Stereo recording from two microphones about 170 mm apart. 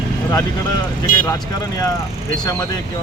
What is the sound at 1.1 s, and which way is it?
Speech, 55° left (ahead or behind).